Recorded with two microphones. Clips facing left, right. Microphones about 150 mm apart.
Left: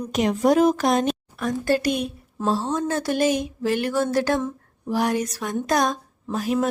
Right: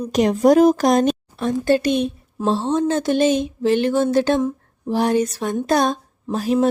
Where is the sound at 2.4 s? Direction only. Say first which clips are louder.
Right 4 dB; 25° right (ahead or behind).